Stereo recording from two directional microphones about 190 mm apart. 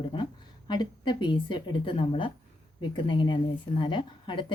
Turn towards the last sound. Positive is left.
turn(degrees=25)  # may be behind; listen again after turning